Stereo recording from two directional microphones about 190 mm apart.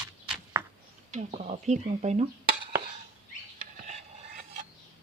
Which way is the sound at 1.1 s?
35° right (ahead or behind).